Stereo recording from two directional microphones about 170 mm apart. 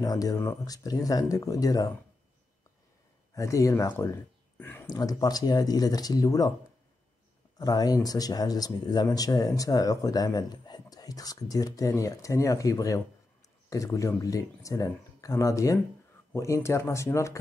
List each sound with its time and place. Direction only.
0.0 s speech: 20° left (ahead or behind)
3.3 s speech: 20° left (ahead or behind)
7.5 s speech: 20° left (ahead or behind)